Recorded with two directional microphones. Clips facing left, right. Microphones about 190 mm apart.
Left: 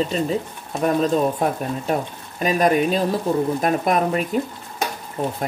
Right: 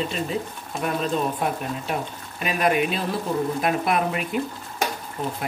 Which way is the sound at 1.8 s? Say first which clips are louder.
Left 5 dB; 40° left (ahead or behind).